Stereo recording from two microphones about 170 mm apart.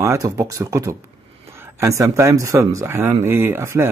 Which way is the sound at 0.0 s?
20° right (ahead or behind).